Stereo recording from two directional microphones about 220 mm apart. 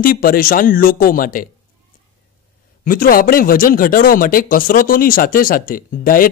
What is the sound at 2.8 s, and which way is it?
Speech, 40° left (ahead or behind).